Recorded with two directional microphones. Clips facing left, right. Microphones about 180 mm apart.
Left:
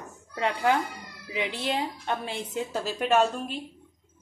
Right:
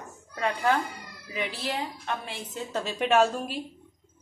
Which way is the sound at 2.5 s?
15° left (ahead or behind).